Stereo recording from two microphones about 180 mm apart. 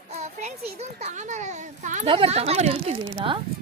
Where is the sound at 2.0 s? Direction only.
30° right (ahead or behind).